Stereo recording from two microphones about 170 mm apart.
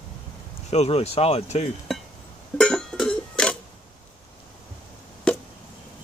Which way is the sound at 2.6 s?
5° left (ahead or behind).